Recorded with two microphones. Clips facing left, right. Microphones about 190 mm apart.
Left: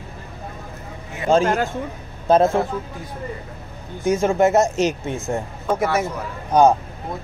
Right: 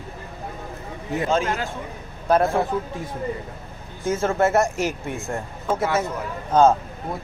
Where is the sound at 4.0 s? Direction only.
15° left (ahead or behind).